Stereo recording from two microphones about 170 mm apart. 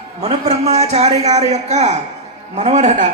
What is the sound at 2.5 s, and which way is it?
Speech, 45° right (ahead or behind).